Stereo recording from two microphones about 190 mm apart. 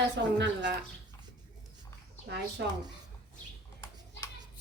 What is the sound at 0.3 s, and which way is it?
Speech, 70° right (ahead or behind).